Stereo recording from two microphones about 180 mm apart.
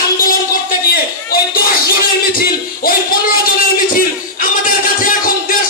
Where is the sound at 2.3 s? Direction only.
55° left (ahead or behind).